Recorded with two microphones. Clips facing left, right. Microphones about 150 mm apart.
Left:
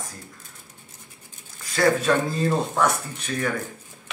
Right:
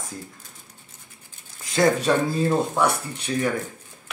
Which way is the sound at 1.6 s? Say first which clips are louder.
Right 1 dB; 20° right (ahead or behind).